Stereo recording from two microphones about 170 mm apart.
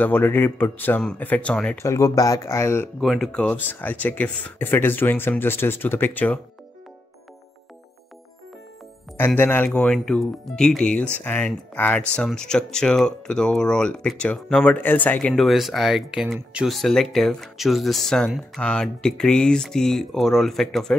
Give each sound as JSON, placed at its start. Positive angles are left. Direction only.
{"t": 0.0, "sound": "speech", "side_deg": 10}
{"t": 1.8, "sound": "speech", "side_deg": 20}
{"t": 3.0, "sound": "speech", "side_deg": 0}
{"t": 9.1, "sound": "speech", "side_deg": 10}